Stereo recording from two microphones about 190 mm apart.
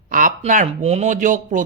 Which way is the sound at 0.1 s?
45° right (ahead or behind).